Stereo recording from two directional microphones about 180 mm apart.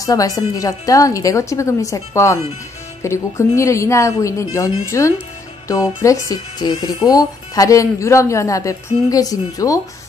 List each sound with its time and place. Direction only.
0.0 s speech: 20° left (ahead or behind)